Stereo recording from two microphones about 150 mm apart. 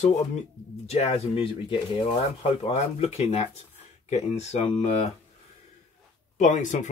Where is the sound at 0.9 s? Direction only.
45° left (ahead or behind).